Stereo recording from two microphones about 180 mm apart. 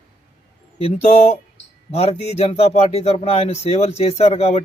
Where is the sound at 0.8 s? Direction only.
35° left (ahead or behind).